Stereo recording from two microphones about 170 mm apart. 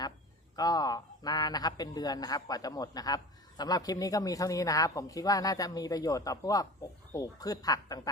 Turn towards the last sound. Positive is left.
turn(degrees=20)  # may be behind; listen again after turning